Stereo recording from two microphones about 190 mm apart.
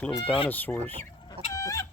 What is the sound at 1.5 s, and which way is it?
Chicken, 15° left (ahead or behind).